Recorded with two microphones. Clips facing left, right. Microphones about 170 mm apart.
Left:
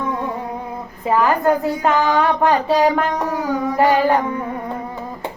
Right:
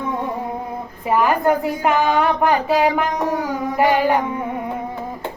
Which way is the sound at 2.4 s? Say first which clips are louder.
Left 1 dB; 30° left (ahead or behind).